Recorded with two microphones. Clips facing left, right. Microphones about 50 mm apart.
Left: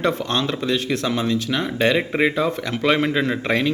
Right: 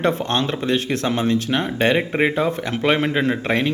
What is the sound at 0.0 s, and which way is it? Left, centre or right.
Speech, right.